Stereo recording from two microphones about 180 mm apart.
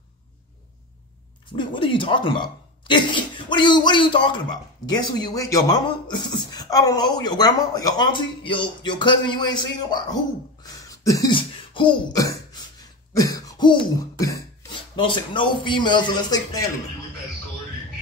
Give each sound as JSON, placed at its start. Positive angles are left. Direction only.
{"t": 1.5, "sound": "speech", "side_deg": 30}
{"t": 10.6, "sound": "throat clearing", "side_deg": 20}
{"t": 15.0, "sound": "speech", "side_deg": 25}